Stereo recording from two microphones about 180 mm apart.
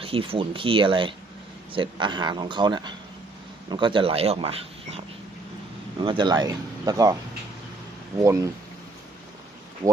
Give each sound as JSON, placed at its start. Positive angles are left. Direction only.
{"t": 0.0, "sound": "speech", "side_deg": -30}
{"t": 8.2, "sound": "speech", "side_deg": -15}